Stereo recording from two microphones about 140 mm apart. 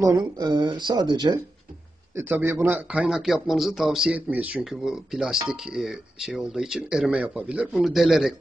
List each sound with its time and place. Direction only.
0.2 s speech: 30° right (ahead or behind)
2.1 s speech: 15° right (ahead or behind)